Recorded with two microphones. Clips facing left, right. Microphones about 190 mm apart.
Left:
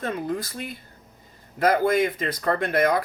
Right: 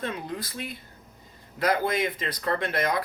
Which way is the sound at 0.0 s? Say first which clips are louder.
Left 5 dB; 45° left (ahead or behind).